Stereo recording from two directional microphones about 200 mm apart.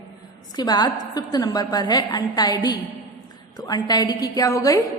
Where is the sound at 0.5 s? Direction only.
20° left (ahead or behind).